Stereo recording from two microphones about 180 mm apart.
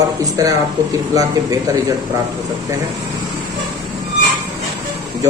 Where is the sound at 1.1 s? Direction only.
20° right (ahead or behind).